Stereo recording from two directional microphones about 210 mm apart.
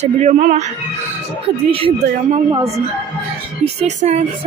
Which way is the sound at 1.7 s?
25° right (ahead or behind).